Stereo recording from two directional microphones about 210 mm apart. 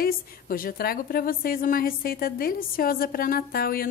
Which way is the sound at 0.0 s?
45° left (ahead or behind).